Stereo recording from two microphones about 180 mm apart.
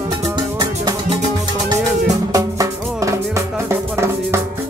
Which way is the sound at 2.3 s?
20° right (ahead or behind).